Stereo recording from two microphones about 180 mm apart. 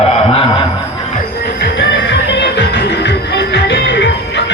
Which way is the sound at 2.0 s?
75° left (ahead or behind).